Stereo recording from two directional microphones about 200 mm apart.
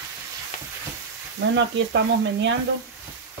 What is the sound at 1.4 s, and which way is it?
Sizzle, 65° right (ahead or behind).